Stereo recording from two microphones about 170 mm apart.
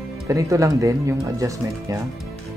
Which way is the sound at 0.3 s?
20° right (ahead or behind).